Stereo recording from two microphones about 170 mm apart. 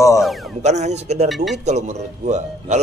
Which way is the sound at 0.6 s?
40° right (ahead or behind).